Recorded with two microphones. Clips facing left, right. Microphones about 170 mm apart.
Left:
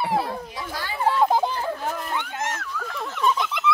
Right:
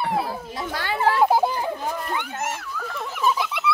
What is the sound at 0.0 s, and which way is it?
Children playing, centre (ahead or behind).